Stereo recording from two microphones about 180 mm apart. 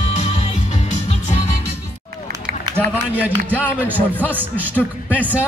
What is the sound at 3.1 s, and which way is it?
A man's voice, 10° right (ahead or behind).